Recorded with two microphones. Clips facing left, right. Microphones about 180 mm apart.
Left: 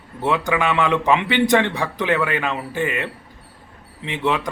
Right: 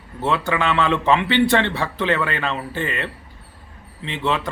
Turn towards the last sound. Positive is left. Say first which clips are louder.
# left 1 dB
turn(degrees=15)  # may be behind; listen again after turning